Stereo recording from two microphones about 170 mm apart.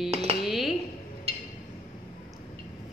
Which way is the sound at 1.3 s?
35° right (ahead or behind).